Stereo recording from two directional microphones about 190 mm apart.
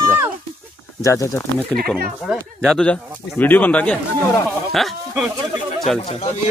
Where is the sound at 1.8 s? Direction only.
Centre (ahead or behind).